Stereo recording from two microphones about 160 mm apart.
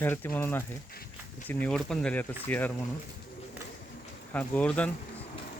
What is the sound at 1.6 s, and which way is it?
Speech, 5° left (ahead or behind).